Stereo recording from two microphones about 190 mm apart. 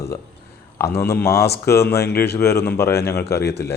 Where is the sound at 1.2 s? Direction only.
55° left (ahead or behind).